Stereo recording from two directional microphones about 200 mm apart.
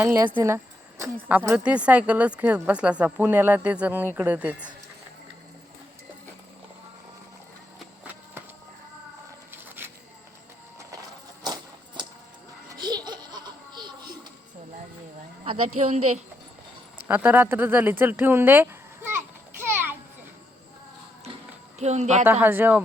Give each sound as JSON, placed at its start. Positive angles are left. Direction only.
{"t": 0.0, "sound": "a woman's voice", "side_deg": -10}
{"t": 9.5, "sound": "a sound", "side_deg": -10}
{"t": 11.4, "sound": "music", "side_deg": -20}
{"t": 12.8, "sound": "baby laughter", "side_deg": -20}
{"t": 17.1, "sound": "a sound", "side_deg": -10}
{"t": 21.8, "sound": "a woman's voice", "side_deg": -35}
{"t": 22.2, "sound": "a woman's voice", "side_deg": -10}